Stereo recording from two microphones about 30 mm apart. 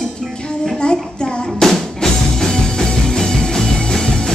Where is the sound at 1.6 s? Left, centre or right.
Centre.